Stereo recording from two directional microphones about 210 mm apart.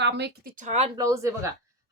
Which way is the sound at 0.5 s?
35° right (ahead or behind).